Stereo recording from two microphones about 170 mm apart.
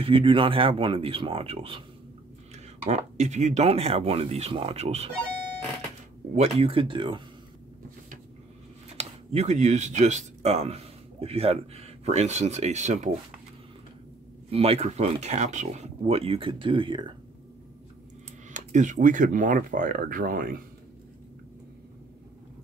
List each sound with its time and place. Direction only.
0.0 s speech: 30° right (ahead or behind)
2.5 s speech: 45° right (ahead or behind)
6.3 s speech: 35° right (ahead or behind)
8.9 s speech: 40° right (ahead or behind)
14.5 s speech: 35° right (ahead or behind)
18.5 s speech: 45° right (ahead or behind)